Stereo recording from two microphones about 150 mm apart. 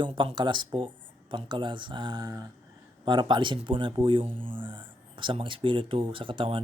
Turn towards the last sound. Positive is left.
turn(degrees=-35)  # may be behind; listen again after turning